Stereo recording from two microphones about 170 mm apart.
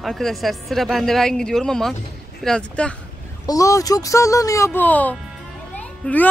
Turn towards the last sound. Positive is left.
turn(degrees=10)  # may be behind; listen again after turning